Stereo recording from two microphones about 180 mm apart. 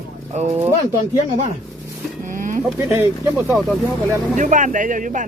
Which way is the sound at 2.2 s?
45° right (ahead or behind).